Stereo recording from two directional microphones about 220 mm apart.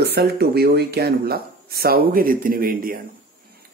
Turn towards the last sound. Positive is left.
turn(degrees=-40)  # may be behind; listen again after turning